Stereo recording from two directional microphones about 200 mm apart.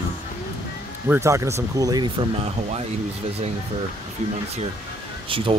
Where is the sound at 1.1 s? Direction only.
15° right (ahead or behind); by 2.9 s 30° right (ahead or behind).